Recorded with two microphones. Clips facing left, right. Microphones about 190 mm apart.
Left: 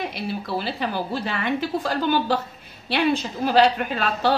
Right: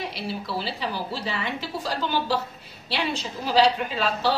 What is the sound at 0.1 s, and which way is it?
A woman's voice, 55° left (ahead or behind).